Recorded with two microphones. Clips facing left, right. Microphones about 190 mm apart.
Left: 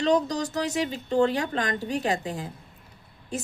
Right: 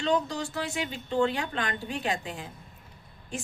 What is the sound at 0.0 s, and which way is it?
Speech, 40° left (ahead or behind).